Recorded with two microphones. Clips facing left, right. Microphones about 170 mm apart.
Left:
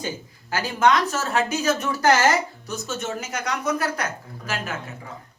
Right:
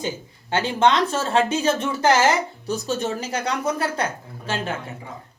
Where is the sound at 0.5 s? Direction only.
25° right (ahead or behind).